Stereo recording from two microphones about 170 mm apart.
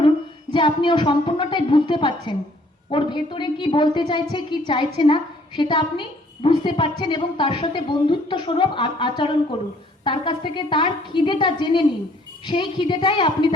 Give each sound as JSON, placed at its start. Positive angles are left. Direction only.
{"t": 0.5, "sound": "a woman's voice", "side_deg": 30}